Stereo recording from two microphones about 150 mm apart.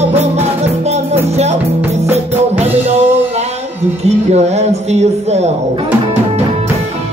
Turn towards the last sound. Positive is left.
turn(degrees=-45)  # may be behind; listen again after turning